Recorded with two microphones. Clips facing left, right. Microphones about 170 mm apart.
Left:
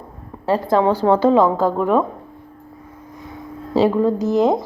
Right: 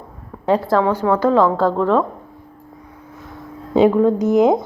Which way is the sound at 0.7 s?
25° left (ahead or behind).